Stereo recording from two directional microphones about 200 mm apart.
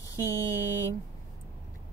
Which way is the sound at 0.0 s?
15° left (ahead or behind).